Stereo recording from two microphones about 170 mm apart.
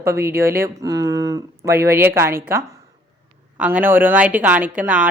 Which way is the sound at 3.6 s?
10° right (ahead or behind).